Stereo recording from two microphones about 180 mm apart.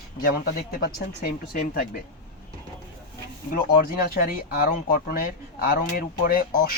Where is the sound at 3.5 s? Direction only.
55° left (ahead or behind).